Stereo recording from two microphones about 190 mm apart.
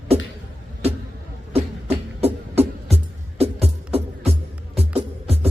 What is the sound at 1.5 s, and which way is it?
Music, 30° right (ahead or behind).